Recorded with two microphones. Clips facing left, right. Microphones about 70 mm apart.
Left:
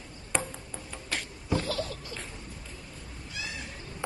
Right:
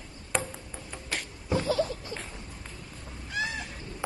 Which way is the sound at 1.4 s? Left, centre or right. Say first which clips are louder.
Right 4 dB; right.